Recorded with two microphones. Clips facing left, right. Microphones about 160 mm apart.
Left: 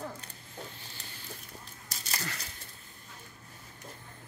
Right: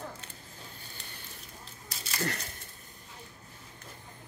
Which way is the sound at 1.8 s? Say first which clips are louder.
Left 1 dB; 40° left (ahead or behind).